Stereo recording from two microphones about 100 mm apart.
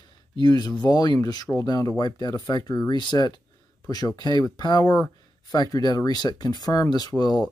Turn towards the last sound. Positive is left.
turn(degrees=40)  # may be behind; listen again after turning